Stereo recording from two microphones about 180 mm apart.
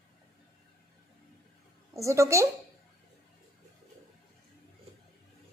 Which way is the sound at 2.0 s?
15° right (ahead or behind).